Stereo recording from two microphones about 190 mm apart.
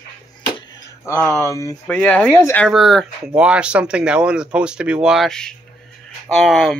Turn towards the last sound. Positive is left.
turn(degrees=0)  # may be behind; listen again after turning